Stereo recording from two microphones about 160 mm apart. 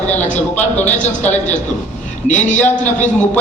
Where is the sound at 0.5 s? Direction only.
10° left (ahead or behind).